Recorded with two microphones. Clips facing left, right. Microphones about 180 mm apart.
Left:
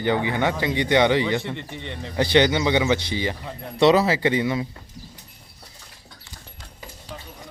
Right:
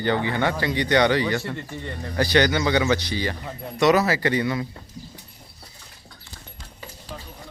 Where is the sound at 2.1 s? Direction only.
20° left (ahead or behind).